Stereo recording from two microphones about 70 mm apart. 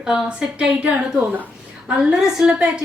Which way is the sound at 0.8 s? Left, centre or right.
Centre.